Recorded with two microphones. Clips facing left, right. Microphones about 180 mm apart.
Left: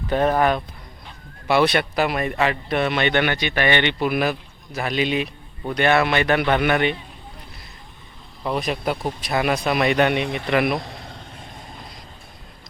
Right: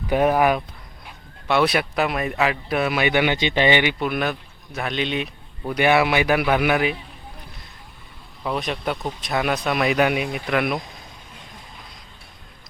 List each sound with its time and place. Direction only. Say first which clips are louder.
0.1 s speech: right 1 dB; 10° right (ahead or behind)
3.3 s speech: right 2 dB; 20° right (ahead or behind)
4.0 s speech: left 2 dB; 5° left (ahead or behind)
8.4 s speech: left 2 dB; centre (ahead or behind)
10.8 s vehicle: left 3 dB; 70° left (ahead or behind)